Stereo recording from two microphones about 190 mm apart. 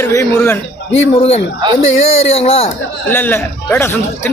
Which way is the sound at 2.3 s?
30° left (ahead or behind).